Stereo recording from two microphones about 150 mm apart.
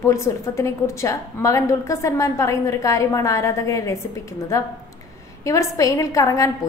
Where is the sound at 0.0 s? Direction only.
20° left (ahead or behind).